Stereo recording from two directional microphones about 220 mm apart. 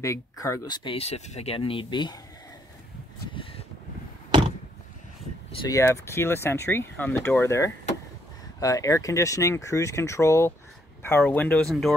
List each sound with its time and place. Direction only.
0.0 s speech: 15° left (ahead or behind)
5.5 s speech: 15° left (ahead or behind)